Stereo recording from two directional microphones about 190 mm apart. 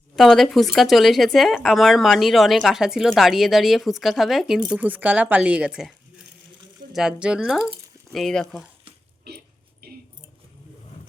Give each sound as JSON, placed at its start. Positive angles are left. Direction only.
{"t": 0.2, "sound": "a woman's voice", "side_deg": 0}
{"t": 6.9, "sound": "speech", "side_deg": -5}
{"t": 9.3, "sound": "a sound", "side_deg": -55}